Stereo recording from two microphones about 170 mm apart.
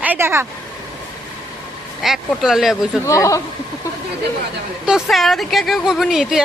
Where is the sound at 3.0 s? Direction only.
20° left (ahead or behind).